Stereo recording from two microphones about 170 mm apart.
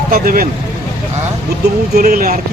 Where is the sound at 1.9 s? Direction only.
60° right (ahead or behind).